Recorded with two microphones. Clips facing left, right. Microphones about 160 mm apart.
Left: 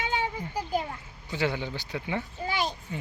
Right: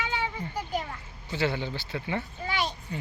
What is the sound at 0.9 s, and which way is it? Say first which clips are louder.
Speech: even; 15° left (ahead or behind).